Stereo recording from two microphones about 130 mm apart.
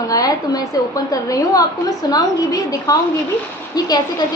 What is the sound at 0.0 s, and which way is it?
A woman's voice, 25° left (ahead or behind).